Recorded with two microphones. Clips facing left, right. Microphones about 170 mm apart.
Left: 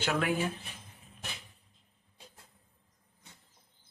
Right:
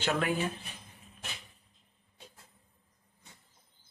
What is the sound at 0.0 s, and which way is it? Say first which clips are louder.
Speech: even; 10° left (ahead or behind).